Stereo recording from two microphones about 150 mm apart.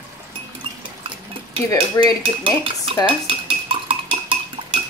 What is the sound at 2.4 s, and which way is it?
Dishes, 35° right (ahead or behind).